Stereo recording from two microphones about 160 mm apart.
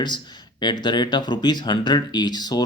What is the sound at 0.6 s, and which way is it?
Speech, 30° left (ahead or behind).